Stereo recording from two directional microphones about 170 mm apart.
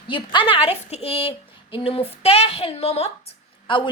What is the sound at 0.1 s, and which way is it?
A woman's voice, 30° left (ahead or behind).